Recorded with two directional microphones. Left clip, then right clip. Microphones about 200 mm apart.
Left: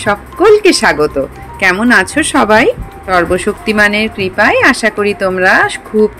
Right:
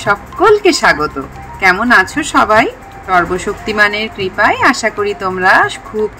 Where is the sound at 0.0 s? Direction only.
30° left (ahead or behind).